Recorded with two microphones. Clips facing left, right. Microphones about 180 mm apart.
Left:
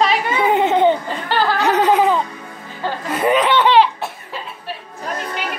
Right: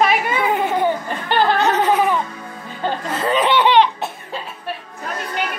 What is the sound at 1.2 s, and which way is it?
Speech, 20° right (ahead or behind).